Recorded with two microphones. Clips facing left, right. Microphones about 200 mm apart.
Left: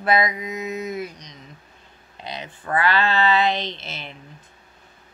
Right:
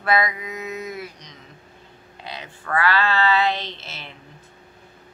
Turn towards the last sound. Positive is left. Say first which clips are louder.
# left 4 dB
turn(degrees=15)  # may be behind; listen again after turning